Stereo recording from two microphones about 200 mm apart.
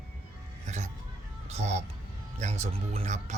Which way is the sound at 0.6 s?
35° right (ahead or behind).